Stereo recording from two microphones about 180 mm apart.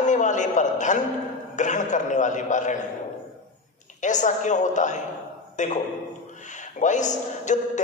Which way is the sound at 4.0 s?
45° left (ahead or behind).